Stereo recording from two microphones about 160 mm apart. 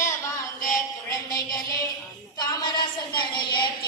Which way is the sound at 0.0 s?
20° left (ahead or behind).